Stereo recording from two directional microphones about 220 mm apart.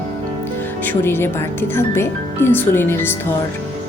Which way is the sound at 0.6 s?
10° left (ahead or behind).